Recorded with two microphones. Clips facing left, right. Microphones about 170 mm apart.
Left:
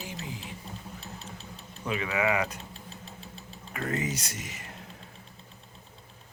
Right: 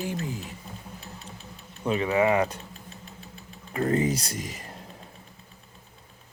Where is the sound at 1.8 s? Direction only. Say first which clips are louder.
Right 6 dB; 35° right (ahead or behind).